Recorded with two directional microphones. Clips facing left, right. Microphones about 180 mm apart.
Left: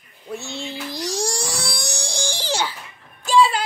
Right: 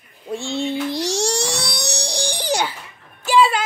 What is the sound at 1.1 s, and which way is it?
Music, 80° right.